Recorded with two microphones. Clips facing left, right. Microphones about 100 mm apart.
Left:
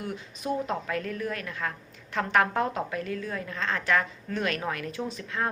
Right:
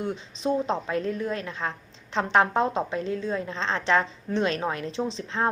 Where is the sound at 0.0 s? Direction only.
25° right (ahead or behind).